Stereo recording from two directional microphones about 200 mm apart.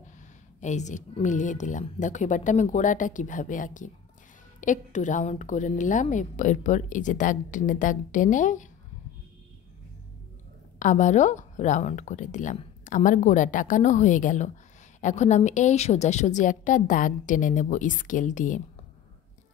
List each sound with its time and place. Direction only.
0.6 s a woman's voice: 35° left (ahead or behind)
10.8 s a woman's voice: 40° left (ahead or behind)